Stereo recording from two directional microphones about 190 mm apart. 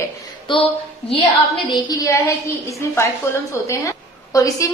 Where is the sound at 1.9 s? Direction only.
15° left (ahead or behind).